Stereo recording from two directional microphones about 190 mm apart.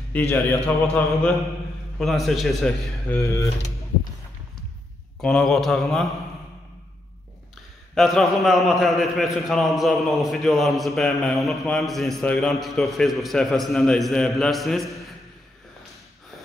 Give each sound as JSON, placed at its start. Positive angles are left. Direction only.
{"t": 0.1, "sound": "a man's voice", "side_deg": 10}
{"t": 2.0, "sound": "a man's voice", "side_deg": 0}
{"t": 3.2, "sound": "a man's voice", "side_deg": 15}
{"t": 5.2, "sound": "a man's voice", "side_deg": 5}
{"t": 7.9, "sound": "a man's voice", "side_deg": 0}